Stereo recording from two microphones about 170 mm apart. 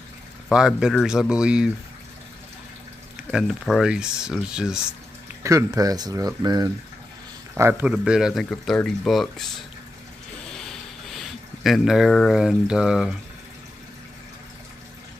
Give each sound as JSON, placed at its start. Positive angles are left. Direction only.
{"t": 0.5, "sound": "speech", "side_deg": -5}
{"t": 3.3, "sound": "speech", "side_deg": 0}
{"t": 5.4, "sound": "speech", "side_deg": -20}
{"t": 7.8, "sound": "speech", "side_deg": -5}
{"t": 11.1, "sound": "speech", "side_deg": 0}